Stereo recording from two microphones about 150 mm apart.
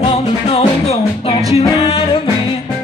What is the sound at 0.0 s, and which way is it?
Music, 40° left (ahead or behind).